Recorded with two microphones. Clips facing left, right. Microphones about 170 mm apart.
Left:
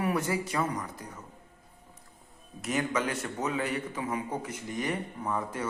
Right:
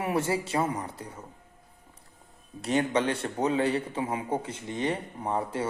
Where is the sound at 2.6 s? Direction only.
30° right (ahead or behind).